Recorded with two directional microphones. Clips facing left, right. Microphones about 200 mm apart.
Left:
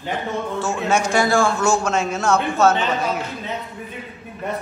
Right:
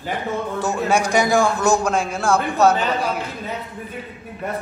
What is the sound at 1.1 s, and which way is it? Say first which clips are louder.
A man's voice: even; 20° right (ahead or behind).